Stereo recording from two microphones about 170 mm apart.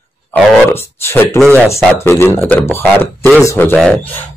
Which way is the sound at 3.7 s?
5° left (ahead or behind).